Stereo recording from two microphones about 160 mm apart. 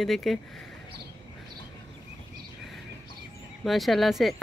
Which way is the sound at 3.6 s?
Centre (ahead or behind).